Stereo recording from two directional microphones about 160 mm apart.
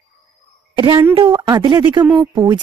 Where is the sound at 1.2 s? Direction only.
25° right (ahead or behind).